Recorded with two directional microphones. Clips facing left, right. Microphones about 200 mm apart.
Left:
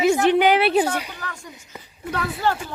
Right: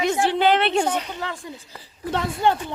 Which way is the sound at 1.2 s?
25° right (ahead or behind).